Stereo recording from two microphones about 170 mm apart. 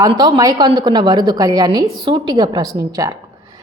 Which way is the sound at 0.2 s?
25° right (ahead or behind).